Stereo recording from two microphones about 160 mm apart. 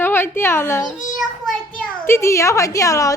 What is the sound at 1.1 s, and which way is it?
Child singing, 5° left (ahead or behind).